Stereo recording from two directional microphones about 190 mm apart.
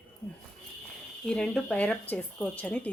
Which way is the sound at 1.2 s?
5° left (ahead or behind).